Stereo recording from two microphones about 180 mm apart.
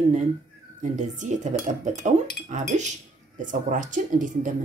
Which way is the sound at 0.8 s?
45° right (ahead or behind).